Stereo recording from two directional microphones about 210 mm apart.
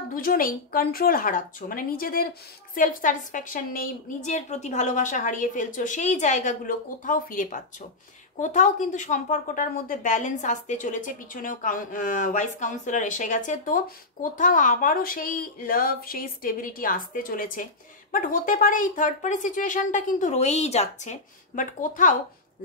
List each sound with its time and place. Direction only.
0.1 s a woman's voice: 40° left (ahead or behind)